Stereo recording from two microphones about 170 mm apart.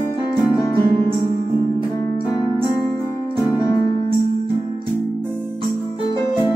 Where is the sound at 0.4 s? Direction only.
20° left (ahead or behind).